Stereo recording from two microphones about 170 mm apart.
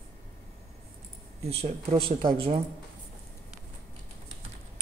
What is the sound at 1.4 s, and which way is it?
Speech, 35° right (ahead or behind).